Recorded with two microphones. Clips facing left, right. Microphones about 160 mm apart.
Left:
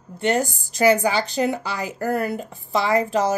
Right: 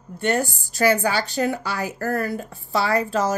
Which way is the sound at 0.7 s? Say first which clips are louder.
Left 2 dB; 20° left (ahead or behind).